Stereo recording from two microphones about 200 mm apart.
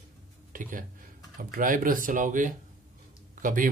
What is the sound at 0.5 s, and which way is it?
Speech, 45° right (ahead or behind).